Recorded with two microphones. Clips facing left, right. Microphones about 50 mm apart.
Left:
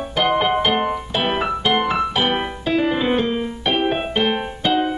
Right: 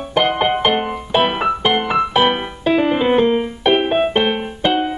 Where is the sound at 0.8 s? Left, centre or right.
Centre.